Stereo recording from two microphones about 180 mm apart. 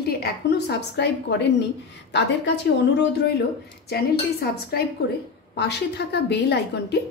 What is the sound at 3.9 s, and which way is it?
A woman's voice, 60° left (ahead or behind).